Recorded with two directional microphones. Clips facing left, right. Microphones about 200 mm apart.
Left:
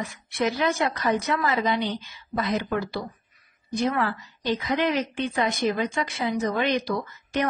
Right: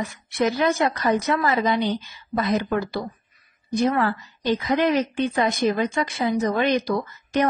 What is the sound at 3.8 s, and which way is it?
A woman's voice, 45° right (ahead or behind).